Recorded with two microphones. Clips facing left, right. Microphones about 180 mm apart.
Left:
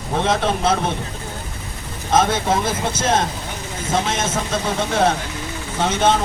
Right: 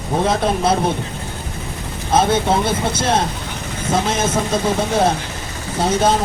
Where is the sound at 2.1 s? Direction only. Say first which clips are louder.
Right 2 dB; 30° right (ahead or behind).